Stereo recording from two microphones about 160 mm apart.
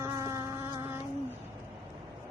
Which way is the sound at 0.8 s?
15° right (ahead or behind).